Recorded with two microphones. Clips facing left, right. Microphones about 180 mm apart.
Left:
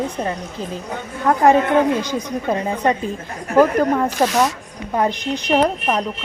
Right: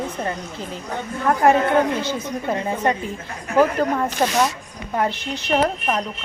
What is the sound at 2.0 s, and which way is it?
A woman's voice, 15° left (ahead or behind).